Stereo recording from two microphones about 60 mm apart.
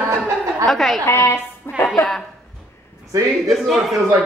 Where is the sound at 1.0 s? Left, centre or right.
Left.